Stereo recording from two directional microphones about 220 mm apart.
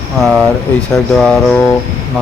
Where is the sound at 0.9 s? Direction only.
Centre (ahead or behind).